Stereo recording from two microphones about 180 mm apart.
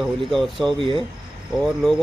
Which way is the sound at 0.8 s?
30° right (ahead or behind).